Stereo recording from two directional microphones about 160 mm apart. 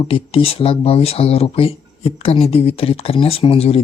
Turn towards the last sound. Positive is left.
turn(degrees=35)  # may be behind; listen again after turning